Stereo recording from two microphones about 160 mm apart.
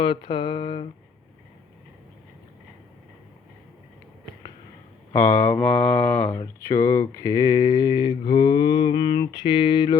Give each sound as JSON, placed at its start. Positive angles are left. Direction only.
{"t": 0.0, "sound": "a sound", "side_deg": 35}
{"t": 5.1, "sound": "mantra", "side_deg": 15}
{"t": 6.4, "sound": "speech", "side_deg": 20}